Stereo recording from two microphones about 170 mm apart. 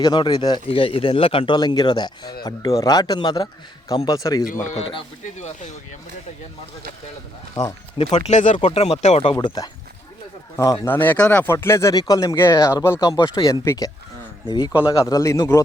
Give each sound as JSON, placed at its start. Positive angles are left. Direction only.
{"t": 0.0, "sound": "speech", "side_deg": 25}
{"t": 4.7, "sound": "speech", "side_deg": 35}
{"t": 7.5, "sound": "speech", "side_deg": 20}
{"t": 8.0, "sound": "speech", "side_deg": 40}
{"t": 9.2, "sound": "speech", "side_deg": 25}
{"t": 15.1, "sound": "a man's voice", "side_deg": 20}